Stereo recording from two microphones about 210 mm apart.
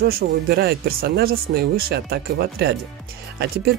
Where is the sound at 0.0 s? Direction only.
50° right (ahead or behind).